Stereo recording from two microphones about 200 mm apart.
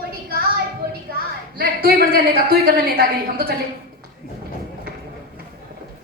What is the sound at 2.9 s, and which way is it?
Speech, 50° right (ahead or behind).